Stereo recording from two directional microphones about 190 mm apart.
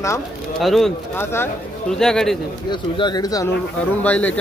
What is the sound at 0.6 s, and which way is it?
Speech, centre (ahead or behind).